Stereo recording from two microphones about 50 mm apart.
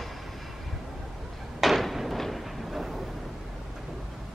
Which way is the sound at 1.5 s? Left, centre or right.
Centre.